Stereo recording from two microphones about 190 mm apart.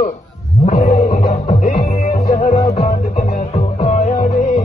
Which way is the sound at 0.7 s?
40° left (ahead or behind).